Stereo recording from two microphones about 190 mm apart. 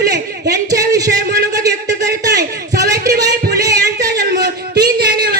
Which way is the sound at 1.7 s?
65° right (ahead or behind).